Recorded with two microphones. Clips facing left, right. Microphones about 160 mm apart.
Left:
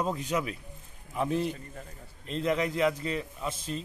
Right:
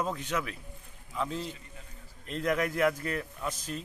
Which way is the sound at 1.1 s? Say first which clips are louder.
Left 4 dB; 15° left (ahead or behind).